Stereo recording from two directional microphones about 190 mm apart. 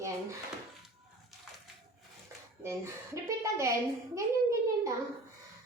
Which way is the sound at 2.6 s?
15° right (ahead or behind).